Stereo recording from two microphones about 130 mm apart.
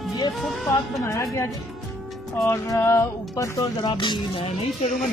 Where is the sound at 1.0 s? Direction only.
20° left (ahead or behind); by 4.5 s 40° left (ahead or behind).